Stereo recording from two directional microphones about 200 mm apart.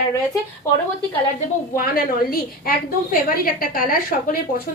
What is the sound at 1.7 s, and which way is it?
A woman's voice, 45° left (ahead or behind).